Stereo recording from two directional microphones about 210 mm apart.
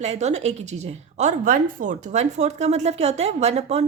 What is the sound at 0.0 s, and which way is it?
Speech, 30° right (ahead or behind).